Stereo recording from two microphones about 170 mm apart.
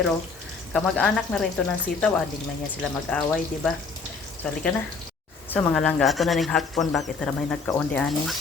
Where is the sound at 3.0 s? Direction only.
5° left (ahead or behind).